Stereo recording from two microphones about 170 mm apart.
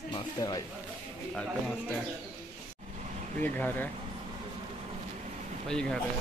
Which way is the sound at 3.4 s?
10° left (ahead or behind).